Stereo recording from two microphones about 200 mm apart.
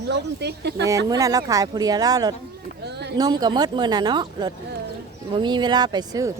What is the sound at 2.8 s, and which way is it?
Speech, 55° right (ahead or behind).